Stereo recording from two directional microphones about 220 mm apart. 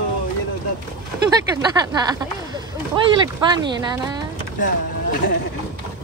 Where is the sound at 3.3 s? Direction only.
20° right (ahead or behind).